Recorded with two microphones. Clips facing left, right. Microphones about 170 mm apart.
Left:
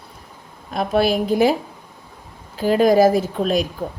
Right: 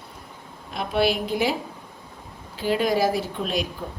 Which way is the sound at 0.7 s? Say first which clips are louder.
Left 5 dB; 45° left (ahead or behind).